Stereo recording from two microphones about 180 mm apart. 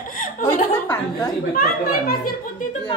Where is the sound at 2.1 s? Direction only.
50° left (ahead or behind).